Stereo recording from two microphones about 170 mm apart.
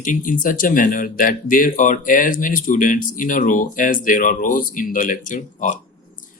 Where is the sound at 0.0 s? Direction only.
50° left (ahead or behind).